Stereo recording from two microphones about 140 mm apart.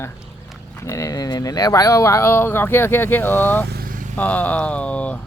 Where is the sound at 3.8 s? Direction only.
75° right (ahead or behind).